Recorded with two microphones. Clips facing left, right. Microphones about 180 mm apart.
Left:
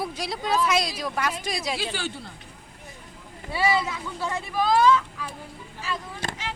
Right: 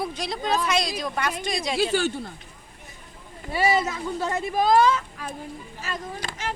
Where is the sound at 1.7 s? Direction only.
45° right (ahead or behind).